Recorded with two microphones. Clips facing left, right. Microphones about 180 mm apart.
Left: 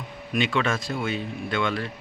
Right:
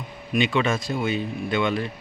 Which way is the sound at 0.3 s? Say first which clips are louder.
Right 2 dB; centre (ahead or behind).